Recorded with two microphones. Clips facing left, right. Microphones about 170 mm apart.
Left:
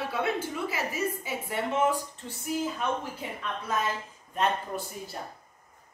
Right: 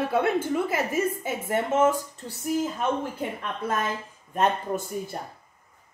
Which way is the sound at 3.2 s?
55° right (ahead or behind).